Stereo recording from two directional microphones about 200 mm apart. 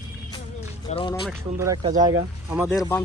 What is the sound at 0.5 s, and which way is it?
Music, 30° left (ahead or behind).